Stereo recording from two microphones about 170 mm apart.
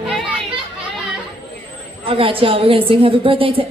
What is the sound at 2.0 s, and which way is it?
A woman's voice, 30° right (ahead or behind).